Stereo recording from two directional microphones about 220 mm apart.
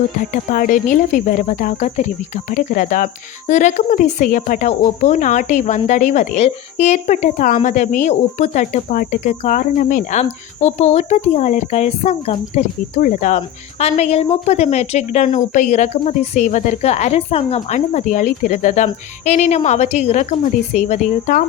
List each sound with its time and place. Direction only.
0.2 s speech: 40° left (ahead or behind)